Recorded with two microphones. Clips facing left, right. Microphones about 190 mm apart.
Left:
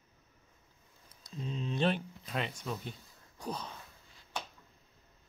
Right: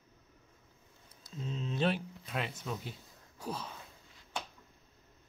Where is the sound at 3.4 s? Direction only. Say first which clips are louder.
Even; 5° right (ahead or behind).